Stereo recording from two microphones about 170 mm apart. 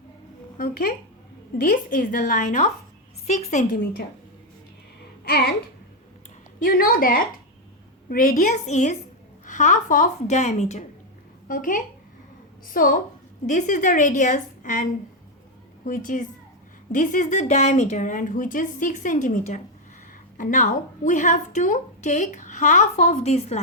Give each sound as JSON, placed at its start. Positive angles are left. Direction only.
{"t": 0.5, "sound": "a woman's voice", "side_deg": 60}
{"t": 6.6, "sound": "a woman's voice", "side_deg": 60}
{"t": 11.4, "sound": "a woman's voice", "side_deg": 55}